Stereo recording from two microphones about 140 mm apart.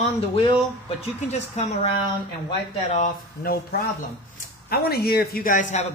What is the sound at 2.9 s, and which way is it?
Speech, 90° left.